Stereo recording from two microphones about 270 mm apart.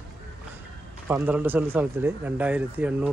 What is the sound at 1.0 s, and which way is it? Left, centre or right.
Speech, centre.